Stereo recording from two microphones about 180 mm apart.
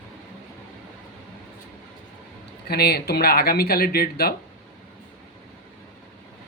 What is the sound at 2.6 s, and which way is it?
A woman's voice, 60° left (ahead or behind).